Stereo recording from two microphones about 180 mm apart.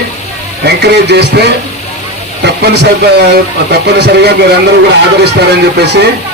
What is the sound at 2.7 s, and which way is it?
A man's voice, 65° right (ahead or behind).